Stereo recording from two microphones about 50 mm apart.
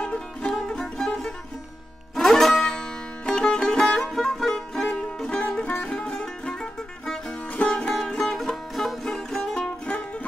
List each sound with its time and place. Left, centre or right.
0.0 s music: left
4.9 s music: left
9.8 s music: left